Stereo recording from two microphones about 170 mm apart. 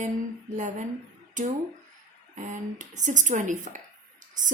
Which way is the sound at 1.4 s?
45° right (ahead or behind).